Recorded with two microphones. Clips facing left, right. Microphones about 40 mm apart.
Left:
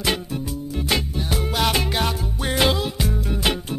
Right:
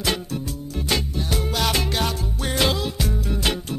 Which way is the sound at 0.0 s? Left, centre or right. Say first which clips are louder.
Left 1 dB; centre.